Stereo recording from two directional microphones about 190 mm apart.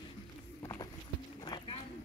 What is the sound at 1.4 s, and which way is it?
Clip-clop, 25° left (ahead or behind).